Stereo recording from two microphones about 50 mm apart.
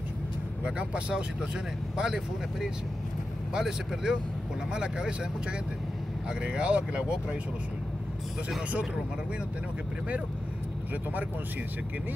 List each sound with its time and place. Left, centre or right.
0.7 s speech: right
1.4 s speech: centre